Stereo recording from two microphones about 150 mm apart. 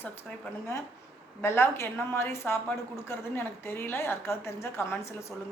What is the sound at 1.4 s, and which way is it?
A woman's voice, 15° left (ahead or behind).